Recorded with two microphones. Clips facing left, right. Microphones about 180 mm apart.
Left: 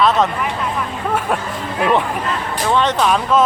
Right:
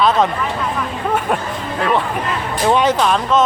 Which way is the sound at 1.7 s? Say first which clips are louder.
Left 2 dB; 15° left (ahead or behind).